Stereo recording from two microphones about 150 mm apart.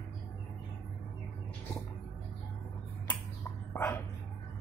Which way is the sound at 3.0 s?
10° left (ahead or behind).